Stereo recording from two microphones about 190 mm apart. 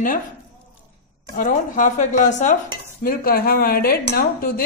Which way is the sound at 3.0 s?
50° left (ahead or behind).